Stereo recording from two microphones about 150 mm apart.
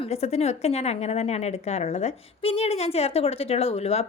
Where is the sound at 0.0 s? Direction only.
45° left (ahead or behind).